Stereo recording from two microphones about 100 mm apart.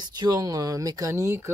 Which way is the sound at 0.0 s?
40° right (ahead or behind).